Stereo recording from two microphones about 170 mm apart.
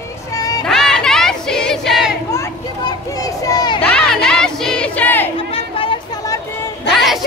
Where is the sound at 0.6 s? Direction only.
5° left (ahead or behind).